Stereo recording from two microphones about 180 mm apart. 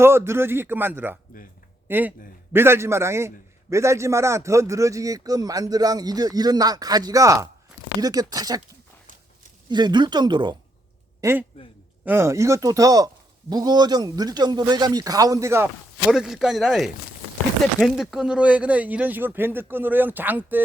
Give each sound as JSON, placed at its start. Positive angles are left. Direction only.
{"t": 0.0, "sound": "a man's voice", "side_deg": -15}
{"t": 9.6, "sound": "speech", "side_deg": -25}
{"t": 11.2, "sound": "a man's voice", "side_deg": -15}